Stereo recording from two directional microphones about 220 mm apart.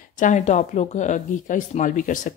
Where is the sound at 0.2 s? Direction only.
35° left (ahead or behind).